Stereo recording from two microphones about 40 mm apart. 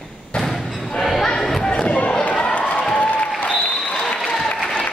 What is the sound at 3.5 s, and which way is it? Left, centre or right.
Applause, left.